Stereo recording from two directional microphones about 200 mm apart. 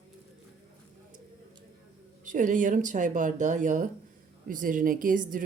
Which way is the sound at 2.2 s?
40° right (ahead or behind).